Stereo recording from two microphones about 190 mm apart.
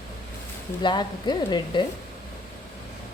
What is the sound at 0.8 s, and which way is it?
Speech, 25° left (ahead or behind).